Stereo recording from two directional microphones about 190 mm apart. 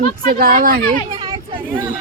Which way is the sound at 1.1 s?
25° right (ahead or behind).